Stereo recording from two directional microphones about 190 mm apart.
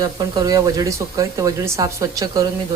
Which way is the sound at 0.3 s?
20° right (ahead or behind).